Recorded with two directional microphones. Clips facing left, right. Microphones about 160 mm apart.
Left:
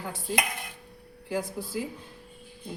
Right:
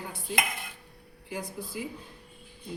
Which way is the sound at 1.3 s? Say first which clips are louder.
Left 5 dB; 90° left.